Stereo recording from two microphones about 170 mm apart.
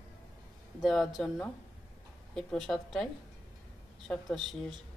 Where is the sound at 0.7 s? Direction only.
Centre (ahead or behind).